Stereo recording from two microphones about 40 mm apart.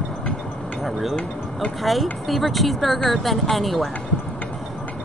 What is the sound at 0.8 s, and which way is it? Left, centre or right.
Speech, centre.